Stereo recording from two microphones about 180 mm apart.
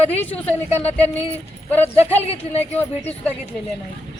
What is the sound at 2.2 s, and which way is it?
Speech, 35° left (ahead or behind).